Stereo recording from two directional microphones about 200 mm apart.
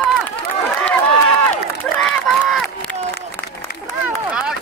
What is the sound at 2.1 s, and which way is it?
Speech, 5° left (ahead or behind).